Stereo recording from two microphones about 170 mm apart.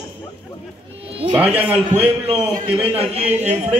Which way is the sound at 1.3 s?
10° right (ahead or behind).